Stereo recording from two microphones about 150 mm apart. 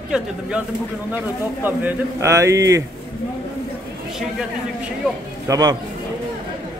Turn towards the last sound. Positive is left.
turn(degrees=-25)  # may be behind; listen again after turning